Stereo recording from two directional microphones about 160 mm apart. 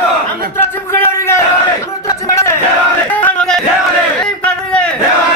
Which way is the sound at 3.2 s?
5° left (ahead or behind).